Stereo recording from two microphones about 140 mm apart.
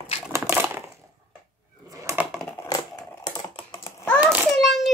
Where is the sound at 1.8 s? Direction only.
25° right (ahead or behind).